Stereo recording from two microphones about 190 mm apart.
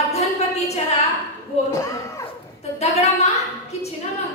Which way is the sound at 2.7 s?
35° left (ahead or behind).